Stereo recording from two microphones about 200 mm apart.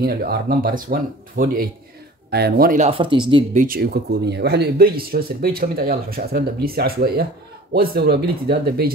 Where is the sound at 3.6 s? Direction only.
50° right (ahead or behind).